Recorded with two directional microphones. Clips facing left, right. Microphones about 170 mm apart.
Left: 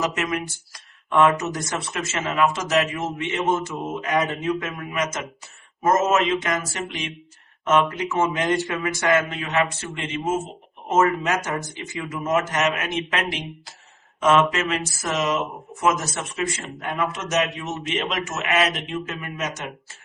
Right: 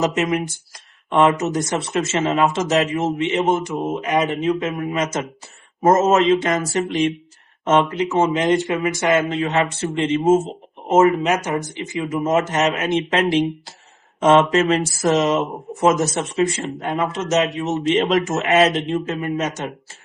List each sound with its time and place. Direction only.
0.0 s speech: 25° right (ahead or behind)
5.8 s mantra: 30° right (ahead or behind)
7.6 s speech: 25° right (ahead or behind)